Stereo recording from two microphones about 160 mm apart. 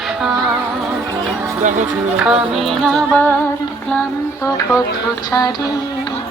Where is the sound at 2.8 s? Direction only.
5° left (ahead or behind).